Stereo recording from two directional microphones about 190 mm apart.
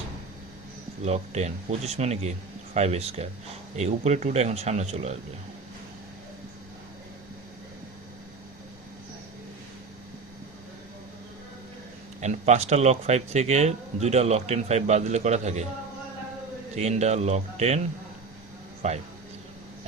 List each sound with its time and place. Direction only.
1.0 s a man's voice: 35° right (ahead or behind)
12.2 s a man's voice: 35° right (ahead or behind)
16.7 s a man's voice: 35° right (ahead or behind)
18.8 s a man's voice: 35° right (ahead or behind)